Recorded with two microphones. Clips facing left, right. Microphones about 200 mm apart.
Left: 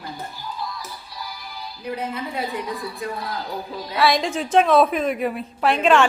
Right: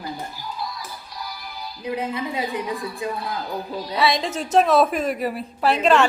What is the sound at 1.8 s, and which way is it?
Speech, 20° right (ahead or behind).